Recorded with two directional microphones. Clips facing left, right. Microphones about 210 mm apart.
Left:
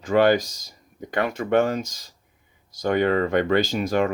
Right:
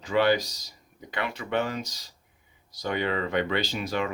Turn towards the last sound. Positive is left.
turn(degrees=45)  # may be behind; listen again after turning